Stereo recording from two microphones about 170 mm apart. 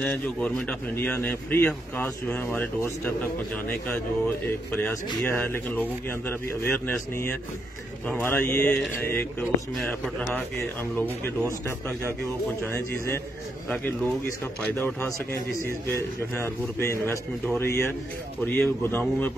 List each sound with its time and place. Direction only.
0.0 s speech: 5° left (ahead or behind)
4.7 s speech: 10° left (ahead or behind)
12.6 s speech: 15° left (ahead or behind)
14.6 s speech: 10° left (ahead or behind)